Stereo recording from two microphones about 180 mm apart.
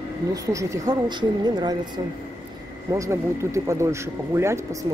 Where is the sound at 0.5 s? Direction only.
20° right (ahead or behind).